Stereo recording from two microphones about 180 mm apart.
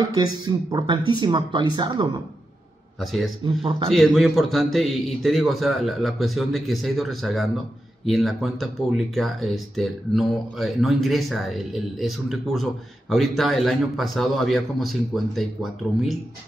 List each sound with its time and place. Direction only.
0.1 s speech: 20° right (ahead or behind)
3.0 s speech: centre (ahead or behind)
3.4 s speech: 30° right (ahead or behind)
3.9 s speech: centre (ahead or behind)